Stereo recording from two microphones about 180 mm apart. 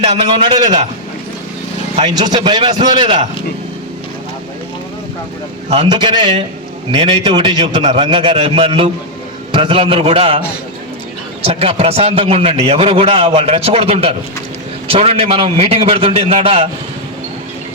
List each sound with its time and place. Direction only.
0.0 s a man's voice: 30° right (ahead or behind)
2.0 s a man's voice: 25° right (ahead or behind)
5.6 s a man's voice: 35° right (ahead or behind)
11.4 s a man's voice: 35° right (ahead or behind)